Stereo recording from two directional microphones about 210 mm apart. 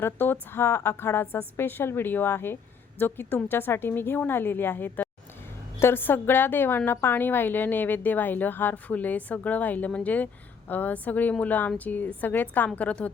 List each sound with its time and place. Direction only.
0.0 s a woman's voice: 10° left (ahead or behind)